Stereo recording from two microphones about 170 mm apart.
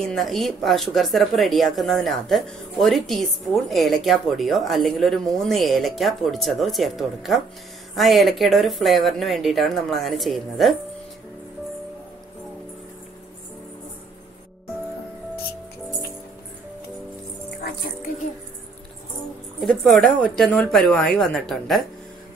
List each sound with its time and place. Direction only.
0.0 s speech: centre (ahead or behind)
17.6 s music: 65° left (ahead or behind)
19.6 s speech: centre (ahead or behind)